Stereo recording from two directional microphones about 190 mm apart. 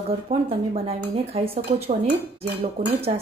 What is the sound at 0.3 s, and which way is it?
Speech, 30° right (ahead or behind).